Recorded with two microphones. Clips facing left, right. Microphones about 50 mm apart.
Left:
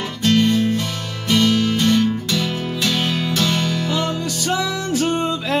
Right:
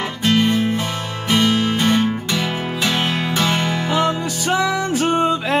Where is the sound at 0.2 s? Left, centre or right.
Right.